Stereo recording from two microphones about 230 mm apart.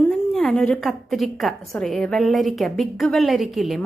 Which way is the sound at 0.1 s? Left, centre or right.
Centre.